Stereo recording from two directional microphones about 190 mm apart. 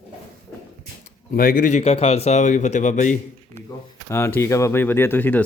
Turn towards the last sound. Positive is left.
turn(degrees=10)  # may be behind; listen again after turning